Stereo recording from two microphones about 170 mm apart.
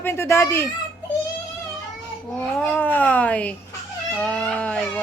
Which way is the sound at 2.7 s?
10° left (ahead or behind).